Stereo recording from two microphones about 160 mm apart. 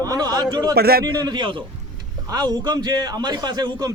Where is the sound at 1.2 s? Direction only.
30° right (ahead or behind).